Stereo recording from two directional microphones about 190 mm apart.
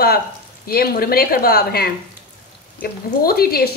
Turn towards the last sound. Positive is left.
turn(degrees=55)  # may be behind; listen again after turning